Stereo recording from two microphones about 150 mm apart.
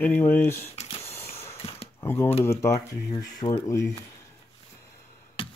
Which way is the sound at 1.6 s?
40° left (ahead or behind).